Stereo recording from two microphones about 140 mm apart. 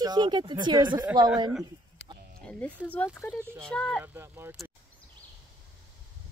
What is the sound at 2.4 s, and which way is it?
Speech, 10° left (ahead or behind).